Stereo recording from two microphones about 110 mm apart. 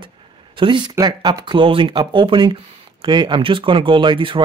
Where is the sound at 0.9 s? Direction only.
35° right (ahead or behind).